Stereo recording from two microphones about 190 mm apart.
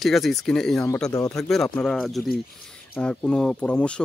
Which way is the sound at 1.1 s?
20° left (ahead or behind).